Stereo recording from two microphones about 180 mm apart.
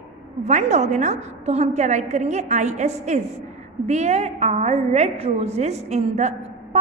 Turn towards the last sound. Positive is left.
turn(degrees=-40)  # may be behind; listen again after turning